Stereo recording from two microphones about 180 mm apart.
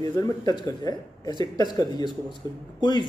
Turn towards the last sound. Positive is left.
turn(degrees=25)  # may be behind; listen again after turning